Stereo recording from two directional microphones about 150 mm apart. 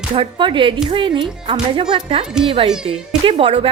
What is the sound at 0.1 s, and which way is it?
A woman's voice, 35° right (ahead or behind).